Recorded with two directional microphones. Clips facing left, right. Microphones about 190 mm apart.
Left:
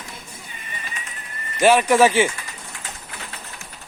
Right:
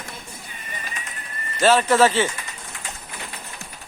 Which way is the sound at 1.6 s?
15° left (ahead or behind).